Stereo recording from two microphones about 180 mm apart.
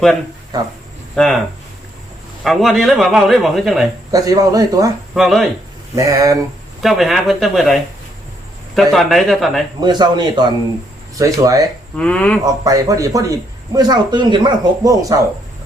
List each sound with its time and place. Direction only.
1.1 s speech: centre (ahead or behind)
2.4 s a man's voice: centre (ahead or behind)
4.1 s a man's voice: 20° right (ahead or behind)
5.1 s a man's voice: centre (ahead or behind)
6.0 s speech: 20° right (ahead or behind)
6.8 s a man's voice: centre (ahead or behind)
9.8 s a man's voice: 25° right (ahead or behind)
11.9 s speech: 5° left (ahead or behind)
12.5 s a man's voice: 20° right (ahead or behind)